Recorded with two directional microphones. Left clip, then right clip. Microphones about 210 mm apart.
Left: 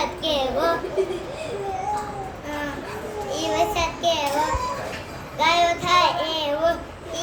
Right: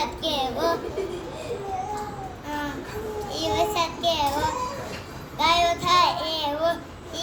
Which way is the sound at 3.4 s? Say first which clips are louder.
Left 1 dB; 20° left (ahead or behind).